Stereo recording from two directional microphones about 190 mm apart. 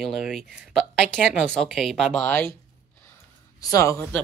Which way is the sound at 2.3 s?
10° left (ahead or behind).